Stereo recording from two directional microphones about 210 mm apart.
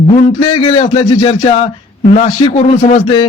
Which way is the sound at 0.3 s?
30° left (ahead or behind).